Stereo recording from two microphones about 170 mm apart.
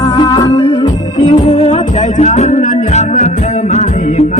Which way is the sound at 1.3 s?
35° left (ahead or behind).